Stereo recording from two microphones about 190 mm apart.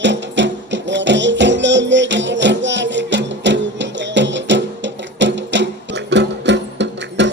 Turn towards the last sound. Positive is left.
turn(degrees=-70)  # may be behind; listen again after turning